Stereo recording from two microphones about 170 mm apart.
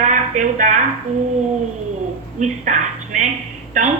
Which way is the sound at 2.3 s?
45° right (ahead or behind).